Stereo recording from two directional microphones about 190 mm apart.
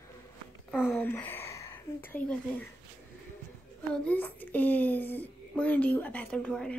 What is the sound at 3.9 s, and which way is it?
Speech, 5° left (ahead or behind).